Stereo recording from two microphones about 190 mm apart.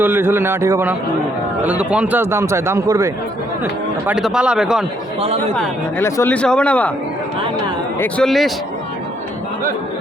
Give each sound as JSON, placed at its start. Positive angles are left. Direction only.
{"t": 0.0, "sound": "a man's voice", "side_deg": -10}
{"t": 5.2, "sound": "speech", "side_deg": -30}
{"t": 5.5, "sound": "speech", "side_deg": 15}
{"t": 7.9, "sound": "speech", "side_deg": 10}